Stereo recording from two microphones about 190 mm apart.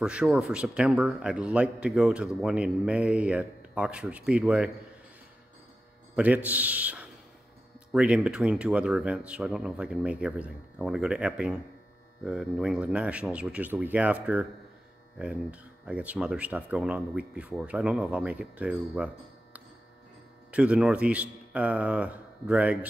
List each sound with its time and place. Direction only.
0.0 s speech: 5° right (ahead or behind)
6.1 s speech: 5° right (ahead or behind)
20.5 s speech: 5° right (ahead or behind)